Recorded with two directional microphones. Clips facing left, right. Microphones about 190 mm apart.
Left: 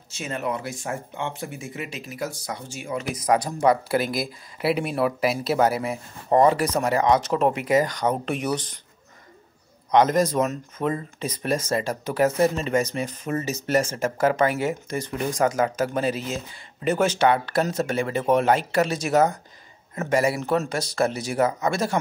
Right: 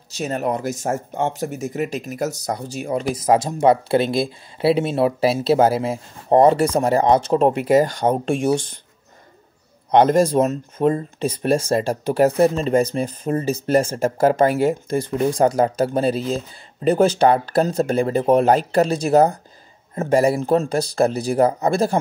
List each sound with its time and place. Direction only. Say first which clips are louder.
0.1 s speech: right 6 dB; 40° right (ahead or behind)
9.8 s speech: right 4 dB; 30° right (ahead or behind)